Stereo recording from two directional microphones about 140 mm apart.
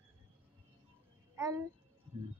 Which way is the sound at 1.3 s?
20° right (ahead or behind).